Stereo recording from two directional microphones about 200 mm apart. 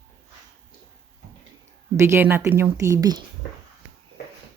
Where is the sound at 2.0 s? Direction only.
10° right (ahead or behind).